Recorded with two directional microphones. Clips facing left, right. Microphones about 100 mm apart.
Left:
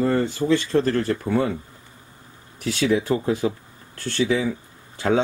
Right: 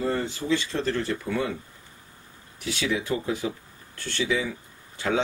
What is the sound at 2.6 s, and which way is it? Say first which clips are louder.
Speech: left 7 dB; 45° left (ahead or behind).